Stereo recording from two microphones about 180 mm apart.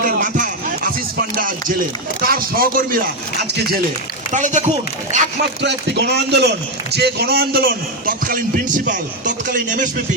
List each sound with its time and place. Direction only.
0.0 s music: 50° right (ahead or behind)
1.4 s a man's voice: 50° right (ahead or behind)
4.3 s speech: 45° right (ahead or behind)
5.6 s a man's voice: 70° right (ahead or behind); by 9.9 s 45° right (ahead or behind)